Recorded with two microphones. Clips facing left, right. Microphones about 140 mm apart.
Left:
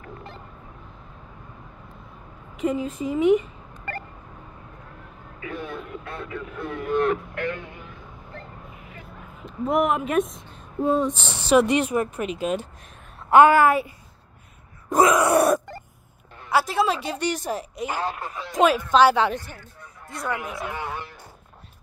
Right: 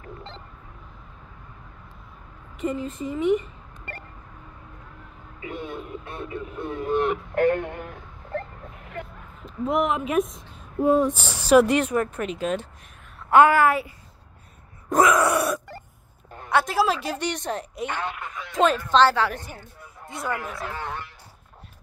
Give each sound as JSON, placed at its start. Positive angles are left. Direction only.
{"t": 2.7, "sound": "a woman's voice", "side_deg": 5}
{"t": 3.1, "sound": "speech", "side_deg": 90}
{"t": 5.4, "sound": "radio", "side_deg": -25}
{"t": 7.3, "sound": "a sound", "side_deg": -50}
{"t": 9.0, "sound": "a sound", "side_deg": -65}
{"t": 9.4, "sound": "a woman's voice", "side_deg": 0}
{"t": 13.3, "sound": "a woman's voice", "side_deg": 20}
{"t": 15.3, "sound": "a sound", "side_deg": 50}
{"t": 16.4, "sound": "a woman's voice", "side_deg": 0}
{"t": 17.9, "sound": "speech", "side_deg": 35}
{"t": 18.5, "sound": "a woman's voice", "side_deg": 15}
{"t": 19.8, "sound": "a sound", "side_deg": 0}
{"t": 20.6, "sound": "a woman's voice", "side_deg": 10}